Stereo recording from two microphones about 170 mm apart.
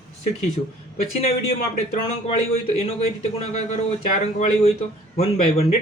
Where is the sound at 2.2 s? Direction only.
40° left (ahead or behind).